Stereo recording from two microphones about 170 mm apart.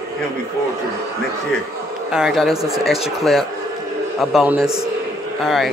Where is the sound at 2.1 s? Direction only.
Centre (ahead or behind).